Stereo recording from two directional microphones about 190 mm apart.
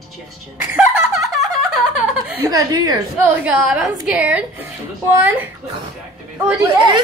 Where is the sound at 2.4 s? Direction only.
20° right (ahead or behind).